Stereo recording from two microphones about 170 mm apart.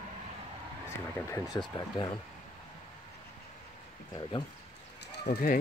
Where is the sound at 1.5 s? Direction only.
20° left (ahead or behind).